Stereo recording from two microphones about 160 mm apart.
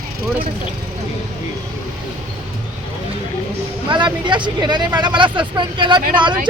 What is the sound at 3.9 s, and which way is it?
Speech, 30° right (ahead or behind).